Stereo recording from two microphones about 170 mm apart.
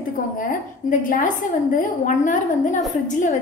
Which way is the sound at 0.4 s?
55° left (ahead or behind).